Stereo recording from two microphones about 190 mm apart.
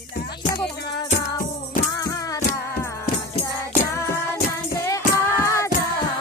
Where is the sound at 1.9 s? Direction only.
20° left (ahead or behind).